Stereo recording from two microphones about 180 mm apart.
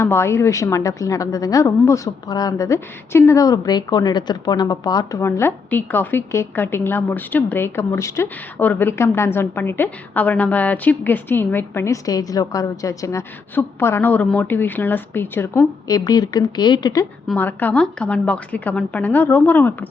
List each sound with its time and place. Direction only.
0.0 s a woman's voice: 15° left (ahead or behind)
17.3 s a woman's voice: 10° left (ahead or behind)